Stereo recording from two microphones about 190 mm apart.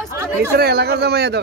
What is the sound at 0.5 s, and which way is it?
Speech, 55° right (ahead or behind).